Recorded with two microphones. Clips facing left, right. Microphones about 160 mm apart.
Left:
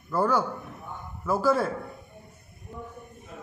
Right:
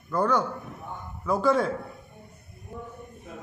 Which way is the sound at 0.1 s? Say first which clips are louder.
Even; 5° left (ahead or behind).